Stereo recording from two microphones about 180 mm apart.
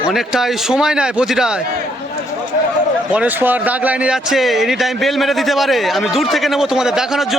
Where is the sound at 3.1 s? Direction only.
10° right (ahead or behind).